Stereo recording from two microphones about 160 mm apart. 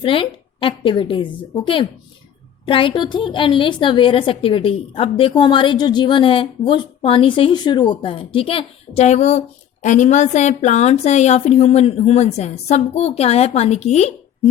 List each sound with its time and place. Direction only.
0.0 s a woman's voice: 35° left (ahead or behind)